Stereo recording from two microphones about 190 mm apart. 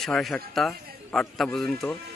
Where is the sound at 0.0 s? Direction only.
Centre (ahead or behind).